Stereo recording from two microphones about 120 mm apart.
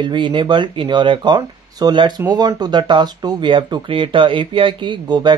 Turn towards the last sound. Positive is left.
turn(degrees=-40)  # may be behind; listen again after turning